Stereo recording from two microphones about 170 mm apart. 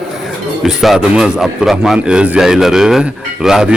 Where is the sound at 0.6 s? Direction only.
5° right (ahead or behind).